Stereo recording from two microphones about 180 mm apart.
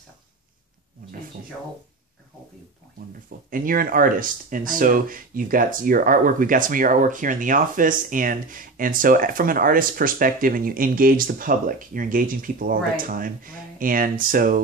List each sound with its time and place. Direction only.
3.4 s speech: 50° right (ahead or behind)